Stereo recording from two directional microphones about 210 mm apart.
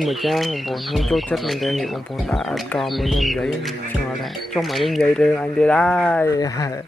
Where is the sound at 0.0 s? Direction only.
Centre (ahead or behind).